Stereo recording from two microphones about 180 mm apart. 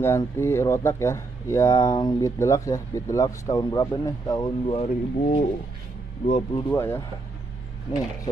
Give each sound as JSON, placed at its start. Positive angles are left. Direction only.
{"t": 0.0, "sound": "speech", "side_deg": 15}
{"t": 6.7, "sound": "speech", "side_deg": 15}